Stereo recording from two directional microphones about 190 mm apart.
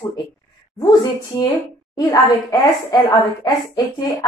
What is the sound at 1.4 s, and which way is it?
A woman's voice, 20° left (ahead or behind).